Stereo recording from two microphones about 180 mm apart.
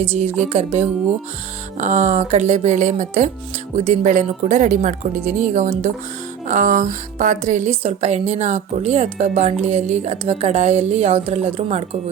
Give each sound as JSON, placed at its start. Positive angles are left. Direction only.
{"t": 0.0, "sound": "speech", "side_deg": -35}